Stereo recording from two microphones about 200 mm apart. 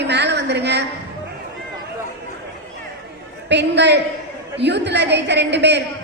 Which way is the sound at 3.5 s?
60° right (ahead or behind).